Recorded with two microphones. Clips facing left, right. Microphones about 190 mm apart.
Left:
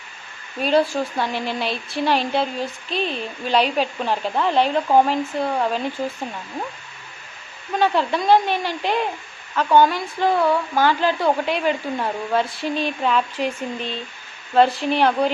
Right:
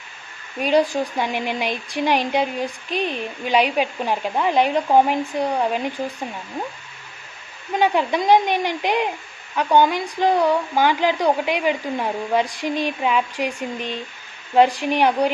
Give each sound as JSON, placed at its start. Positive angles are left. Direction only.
{"t": 0.6, "sound": "speech", "side_deg": -15}
{"t": 7.8, "sound": "speech", "side_deg": -15}